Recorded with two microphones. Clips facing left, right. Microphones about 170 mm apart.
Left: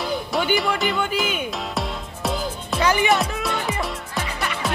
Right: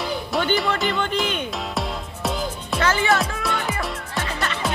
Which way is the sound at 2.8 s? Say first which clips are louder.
Left 1 dB; 15° left (ahead or behind).